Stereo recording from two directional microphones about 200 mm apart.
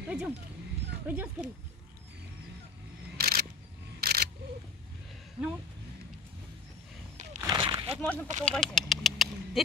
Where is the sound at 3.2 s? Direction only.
50° right (ahead or behind).